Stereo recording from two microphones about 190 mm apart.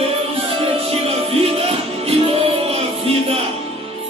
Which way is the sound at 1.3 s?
30° right (ahead or behind).